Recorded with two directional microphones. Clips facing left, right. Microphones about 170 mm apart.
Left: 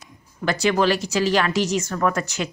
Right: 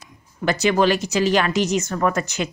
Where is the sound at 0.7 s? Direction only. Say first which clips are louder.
Right 2 dB; 20° right (ahead or behind).